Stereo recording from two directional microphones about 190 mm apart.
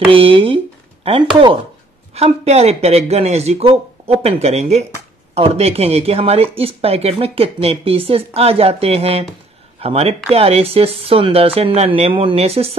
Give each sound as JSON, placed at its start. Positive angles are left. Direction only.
{"t": 0.1, "sound": "speech", "side_deg": -30}